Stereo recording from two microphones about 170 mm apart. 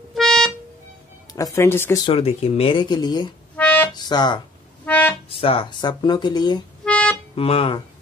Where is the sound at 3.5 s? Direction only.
10° left (ahead or behind).